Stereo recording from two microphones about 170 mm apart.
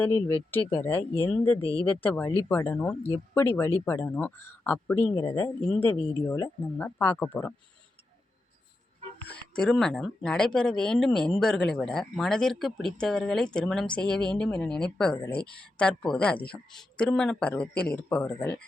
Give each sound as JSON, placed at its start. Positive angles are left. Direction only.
{"t": 0.5, "sound": "speech", "side_deg": 10}
{"t": 9.2, "sound": "speech", "side_deg": 5}